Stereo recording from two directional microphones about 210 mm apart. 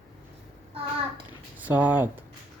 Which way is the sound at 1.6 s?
10° right (ahead or behind).